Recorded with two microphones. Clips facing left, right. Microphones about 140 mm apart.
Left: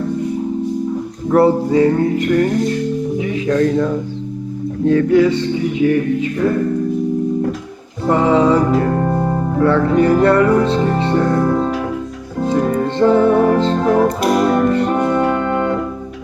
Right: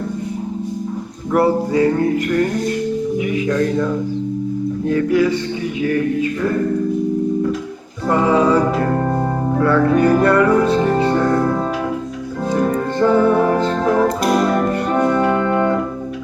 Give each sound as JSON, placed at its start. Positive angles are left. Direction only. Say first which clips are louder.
{"t": 1.3, "sound": "music", "louder": "left 3 dB", "side_deg": 25}
{"t": 4.9, "sound": "music", "louder": "left 4 dB", "side_deg": 25}
{"t": 8.0, "sound": "music", "louder": "left 2 dB", "side_deg": 20}
{"t": 9.6, "sound": "music", "louder": "left 1 dB", "side_deg": 25}
{"t": 13.0, "sound": "music", "louder": "left 2 dB", "side_deg": 25}
{"t": 15.3, "sound": "music", "louder": "right 1 dB", "side_deg": -30}